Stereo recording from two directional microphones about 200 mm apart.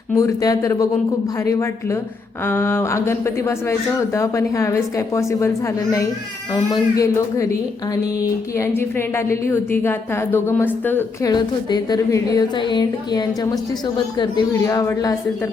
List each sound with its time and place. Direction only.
0.1 s a woman's voice: 15° left (ahead or behind)
8.5 s a woman's voice: 15° left (ahead or behind)